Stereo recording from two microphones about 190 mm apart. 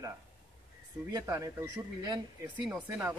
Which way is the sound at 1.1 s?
20° right (ahead or behind).